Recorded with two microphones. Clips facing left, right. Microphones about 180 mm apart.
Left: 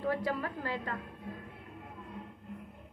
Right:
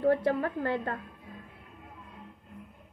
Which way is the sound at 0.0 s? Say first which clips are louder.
Right 7 dB; 55° right (ahead or behind).